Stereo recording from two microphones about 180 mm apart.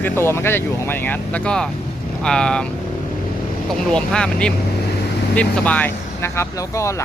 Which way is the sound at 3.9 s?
5° left (ahead or behind).